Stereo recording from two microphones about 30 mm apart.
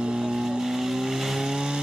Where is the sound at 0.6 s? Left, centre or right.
Centre.